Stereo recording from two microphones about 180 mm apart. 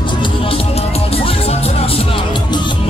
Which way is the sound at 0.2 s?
30° left (ahead or behind).